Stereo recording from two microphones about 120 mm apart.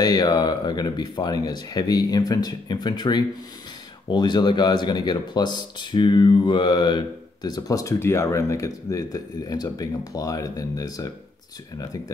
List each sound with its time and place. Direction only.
0.0 s speech: 35° left (ahead or behind)